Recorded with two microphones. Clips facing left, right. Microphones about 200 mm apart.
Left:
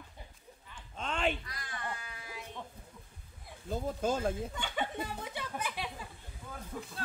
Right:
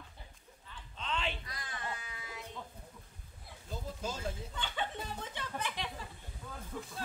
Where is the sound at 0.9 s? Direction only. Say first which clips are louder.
Left 5 dB; 50° left (ahead or behind).